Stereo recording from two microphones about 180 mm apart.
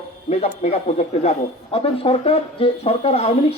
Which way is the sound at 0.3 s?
35° left (ahead or behind).